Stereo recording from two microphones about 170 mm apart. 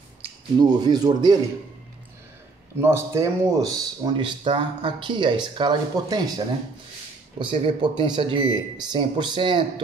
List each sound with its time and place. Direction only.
0.2 s speech: 25° right (ahead or behind)
2.8 s speech: 15° right (ahead or behind)